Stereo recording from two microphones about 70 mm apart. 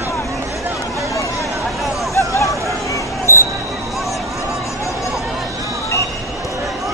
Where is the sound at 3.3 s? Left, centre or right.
Left.